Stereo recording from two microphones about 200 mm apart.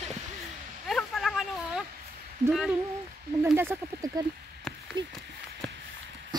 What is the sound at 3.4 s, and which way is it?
Snake, 10° right (ahead or behind).